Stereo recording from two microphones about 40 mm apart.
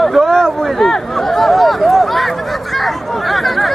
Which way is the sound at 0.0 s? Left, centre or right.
Centre.